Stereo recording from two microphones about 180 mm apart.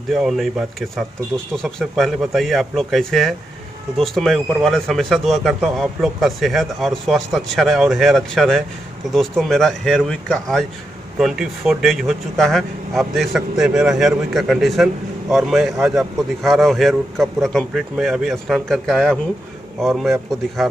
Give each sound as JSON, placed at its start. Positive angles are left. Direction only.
{"t": 0.1, "sound": "speech", "side_deg": 0}